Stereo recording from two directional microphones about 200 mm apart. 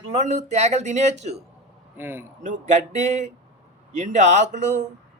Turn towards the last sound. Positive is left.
turn(degrees=-35)  # may be behind; listen again after turning